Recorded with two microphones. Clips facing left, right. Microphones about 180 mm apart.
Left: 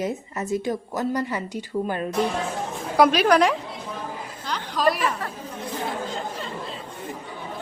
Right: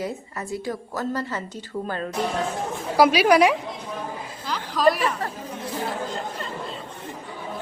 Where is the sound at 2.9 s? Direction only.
5° right (ahead or behind).